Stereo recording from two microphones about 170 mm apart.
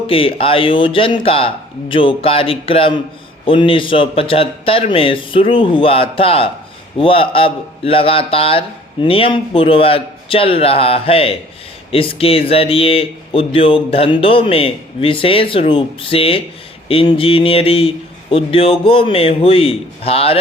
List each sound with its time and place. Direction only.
0.1 s speech: 30° left (ahead or behind)